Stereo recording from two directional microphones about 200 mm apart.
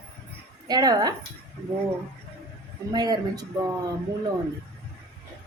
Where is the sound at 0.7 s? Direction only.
20° right (ahead or behind).